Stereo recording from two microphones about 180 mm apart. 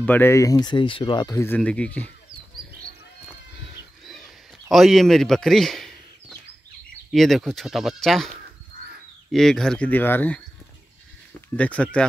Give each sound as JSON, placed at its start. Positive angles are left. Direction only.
{"t": 0.0, "sound": "speech", "side_deg": 10}
{"t": 1.4, "sound": "speech", "side_deg": 10}
{"t": 4.0, "sound": "a sound", "side_deg": 0}
{"t": 7.1, "sound": "speech", "side_deg": 0}
{"t": 11.5, "sound": "speech", "side_deg": 5}